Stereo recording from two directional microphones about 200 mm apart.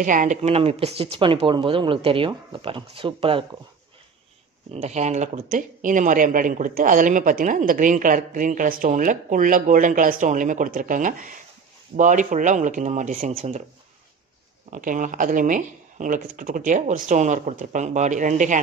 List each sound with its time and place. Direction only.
0.0 s speech: 40° right (ahead or behind)
4.7 s speech: 35° right (ahead or behind)
14.7 s speech: 40° right (ahead or behind)